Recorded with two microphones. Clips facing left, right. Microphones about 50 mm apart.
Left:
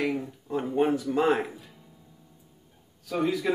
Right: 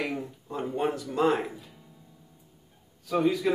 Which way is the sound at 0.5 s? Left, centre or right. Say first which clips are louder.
Left 4 dB; centre.